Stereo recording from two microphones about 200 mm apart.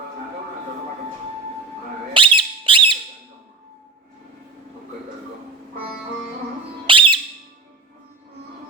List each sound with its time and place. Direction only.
2.1 s squeak: 25° right (ahead or behind)
6.8 s music: 25° right (ahead or behind)